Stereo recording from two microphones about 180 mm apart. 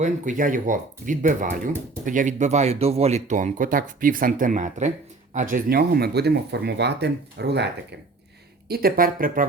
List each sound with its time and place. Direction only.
0.0 s speech: 45° right (ahead or behind); by 7.9 s 70° right (ahead or behind)
8.6 s speech: 55° right (ahead or behind)